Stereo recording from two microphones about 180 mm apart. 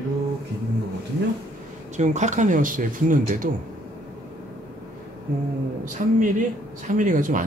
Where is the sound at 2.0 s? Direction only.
40° right (ahead or behind).